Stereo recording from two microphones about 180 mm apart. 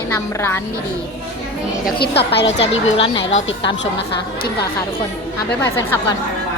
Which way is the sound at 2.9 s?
30° left (ahead or behind).